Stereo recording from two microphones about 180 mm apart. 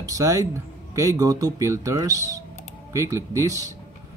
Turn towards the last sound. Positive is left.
turn(degrees=-20)  # may be behind; listen again after turning